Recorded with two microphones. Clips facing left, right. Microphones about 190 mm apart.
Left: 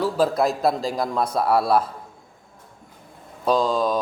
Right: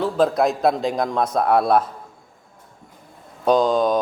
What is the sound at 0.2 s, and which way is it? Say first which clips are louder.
A man's voice: right 4 dB; centre (ahead or behind).